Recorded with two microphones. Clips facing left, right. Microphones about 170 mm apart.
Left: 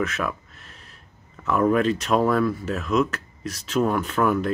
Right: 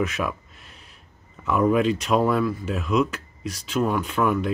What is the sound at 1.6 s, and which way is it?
Speech, 5° right (ahead or behind).